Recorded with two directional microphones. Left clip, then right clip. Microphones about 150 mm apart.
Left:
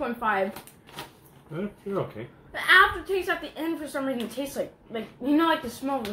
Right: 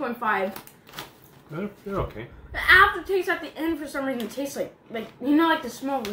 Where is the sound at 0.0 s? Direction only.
5° left (ahead or behind).